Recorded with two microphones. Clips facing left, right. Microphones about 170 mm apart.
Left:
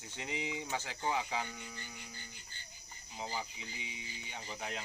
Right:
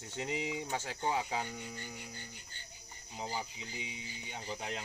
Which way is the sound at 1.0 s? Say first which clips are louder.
Right 1 dB; 35° right (ahead or behind).